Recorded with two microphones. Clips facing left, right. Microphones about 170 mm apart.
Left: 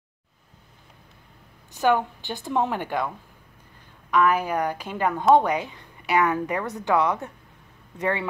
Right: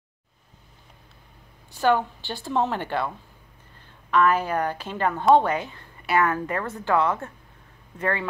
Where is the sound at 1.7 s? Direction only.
15° left (ahead or behind).